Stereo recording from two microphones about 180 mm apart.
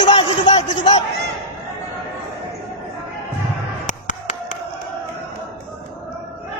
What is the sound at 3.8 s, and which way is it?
Tap, 45° left (ahead or behind).